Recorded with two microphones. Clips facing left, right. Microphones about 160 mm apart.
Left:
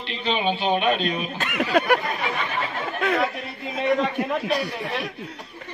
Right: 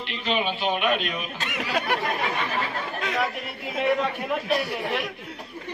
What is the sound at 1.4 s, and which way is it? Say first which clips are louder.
Speech: left 7 dB; 55° left (ahead or behind).